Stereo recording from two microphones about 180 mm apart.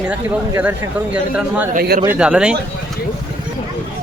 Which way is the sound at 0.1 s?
10° right (ahead or behind).